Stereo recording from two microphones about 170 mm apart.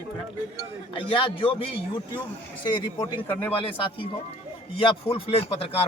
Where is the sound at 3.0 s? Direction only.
10° left (ahead or behind).